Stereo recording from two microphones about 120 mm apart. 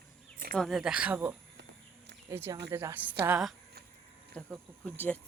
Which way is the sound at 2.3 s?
20° right (ahead or behind).